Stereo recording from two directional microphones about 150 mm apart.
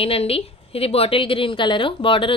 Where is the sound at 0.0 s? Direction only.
40° left (ahead or behind).